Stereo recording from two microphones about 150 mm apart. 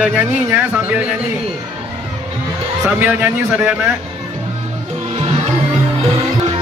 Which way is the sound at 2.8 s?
15° right (ahead or behind).